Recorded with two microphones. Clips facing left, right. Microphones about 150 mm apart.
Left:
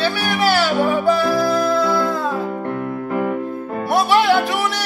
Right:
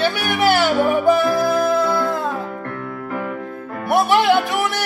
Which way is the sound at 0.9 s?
20° right (ahead or behind).